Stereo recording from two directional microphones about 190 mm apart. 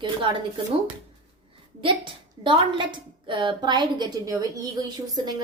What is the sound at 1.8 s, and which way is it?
A woman's voice, 25° right (ahead or behind).